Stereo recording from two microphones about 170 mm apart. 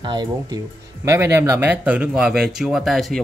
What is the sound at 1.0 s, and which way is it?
Speech, 15° right (ahead or behind).